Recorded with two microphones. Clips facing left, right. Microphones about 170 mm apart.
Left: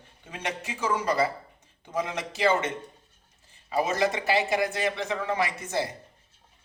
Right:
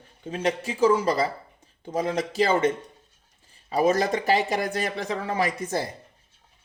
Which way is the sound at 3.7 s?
40° right (ahead or behind).